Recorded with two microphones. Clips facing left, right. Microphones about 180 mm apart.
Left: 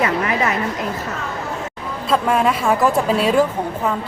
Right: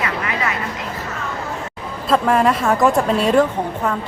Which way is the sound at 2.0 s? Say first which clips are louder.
Right 2 dB; centre (ahead or behind).